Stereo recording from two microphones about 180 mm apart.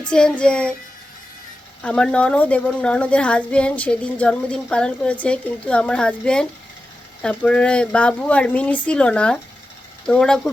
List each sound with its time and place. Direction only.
0.0 s speech: 5° left (ahead or behind)
1.8 s a woman's voice: 5° left (ahead or behind)